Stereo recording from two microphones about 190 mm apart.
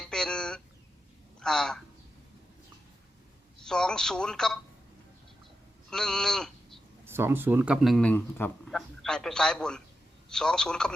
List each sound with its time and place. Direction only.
0.0 s a sound: 5° left (ahead or behind)
1.4 s speech: 5° left (ahead or behind)
3.7 s speech: 5° left (ahead or behind)
5.9 s speech: 5° left (ahead or behind)
7.0 s speech: 10° right (ahead or behind); by 10.9 s 5° left (ahead or behind)